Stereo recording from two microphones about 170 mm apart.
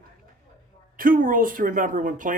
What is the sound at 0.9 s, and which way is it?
Speech, 55° right (ahead or behind).